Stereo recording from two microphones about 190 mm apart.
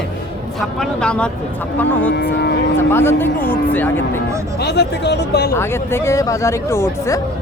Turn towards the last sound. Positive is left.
turn(degrees=15)  # may be behind; listen again after turning